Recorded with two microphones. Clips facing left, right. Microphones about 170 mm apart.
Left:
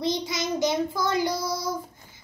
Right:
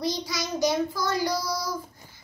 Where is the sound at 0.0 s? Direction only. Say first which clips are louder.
Left 2 dB; 25° left (ahead or behind).